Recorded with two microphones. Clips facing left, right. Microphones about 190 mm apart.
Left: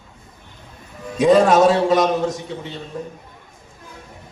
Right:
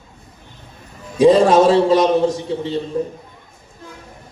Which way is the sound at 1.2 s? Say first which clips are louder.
Right 2 dB; 30° right (ahead or behind).